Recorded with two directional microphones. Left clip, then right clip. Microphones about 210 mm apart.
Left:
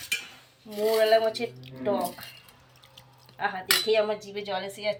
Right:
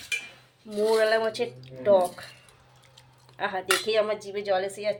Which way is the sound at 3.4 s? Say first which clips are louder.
Even; 55° right (ahead or behind).